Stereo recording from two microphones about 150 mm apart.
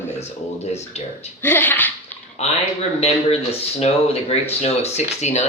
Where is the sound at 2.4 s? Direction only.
45° left (ahead or behind).